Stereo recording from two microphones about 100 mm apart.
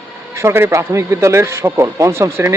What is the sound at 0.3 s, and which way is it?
A man's voice, 25° right (ahead or behind).